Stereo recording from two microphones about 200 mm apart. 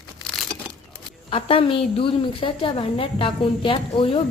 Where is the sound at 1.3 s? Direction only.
25° left (ahead or behind).